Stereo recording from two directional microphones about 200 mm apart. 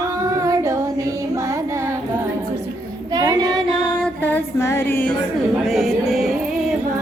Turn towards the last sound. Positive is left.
turn(degrees=0)  # may be behind; listen again after turning